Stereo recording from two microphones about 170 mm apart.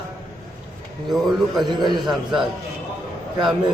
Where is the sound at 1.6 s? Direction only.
25° right (ahead or behind).